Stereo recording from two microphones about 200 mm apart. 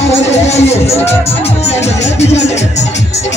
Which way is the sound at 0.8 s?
15° left (ahead or behind).